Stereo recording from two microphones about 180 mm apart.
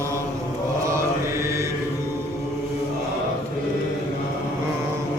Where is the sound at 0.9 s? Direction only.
15° right (ahead or behind).